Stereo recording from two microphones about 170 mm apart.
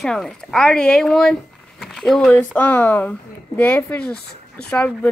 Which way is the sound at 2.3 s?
10° left (ahead or behind).